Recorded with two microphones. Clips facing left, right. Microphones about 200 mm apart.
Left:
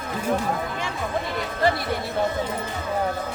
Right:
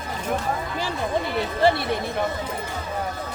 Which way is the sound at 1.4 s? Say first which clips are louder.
Right 3 dB; 30° right (ahead or behind).